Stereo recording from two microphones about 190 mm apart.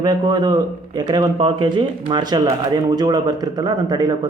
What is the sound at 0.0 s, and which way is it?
Speech, 20° right (ahead or behind).